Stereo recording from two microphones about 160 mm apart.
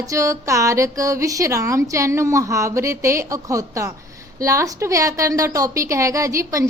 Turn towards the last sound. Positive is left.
turn(degrees=-20)  # may be behind; listen again after turning